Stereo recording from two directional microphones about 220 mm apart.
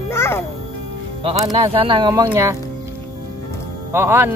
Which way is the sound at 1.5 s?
25° right (ahead or behind).